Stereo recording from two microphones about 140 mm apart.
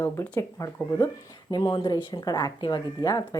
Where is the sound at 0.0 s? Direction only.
15° left (ahead or behind).